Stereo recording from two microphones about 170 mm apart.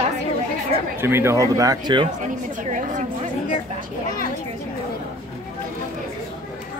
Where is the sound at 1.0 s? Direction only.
15° right (ahead or behind).